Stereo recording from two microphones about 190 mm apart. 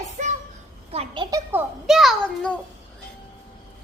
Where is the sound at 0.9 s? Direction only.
30° right (ahead or behind).